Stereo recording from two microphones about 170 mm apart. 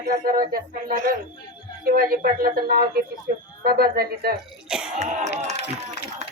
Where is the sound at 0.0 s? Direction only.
65° right (ahead or behind).